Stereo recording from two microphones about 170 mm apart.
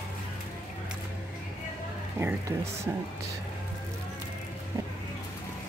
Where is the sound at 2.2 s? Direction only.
15° right (ahead or behind).